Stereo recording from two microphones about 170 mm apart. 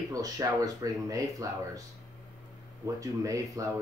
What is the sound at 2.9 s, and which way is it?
Speech, 20° right (ahead or behind).